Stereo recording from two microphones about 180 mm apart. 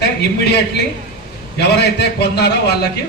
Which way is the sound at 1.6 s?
65° left (ahead or behind).